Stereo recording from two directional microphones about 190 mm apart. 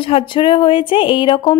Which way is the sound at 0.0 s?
25° left (ahead or behind).